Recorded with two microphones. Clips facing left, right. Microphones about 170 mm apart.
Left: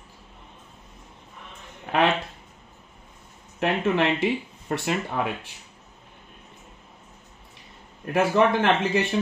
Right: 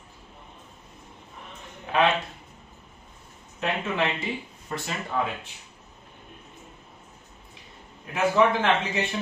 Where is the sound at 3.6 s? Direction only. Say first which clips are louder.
Left 5 dB; 70° left (ahead or behind).